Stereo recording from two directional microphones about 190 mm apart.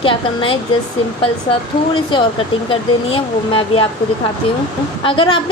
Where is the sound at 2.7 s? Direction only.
30° left (ahead or behind).